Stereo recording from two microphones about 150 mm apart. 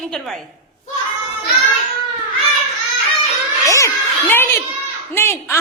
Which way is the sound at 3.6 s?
20° left (ahead or behind).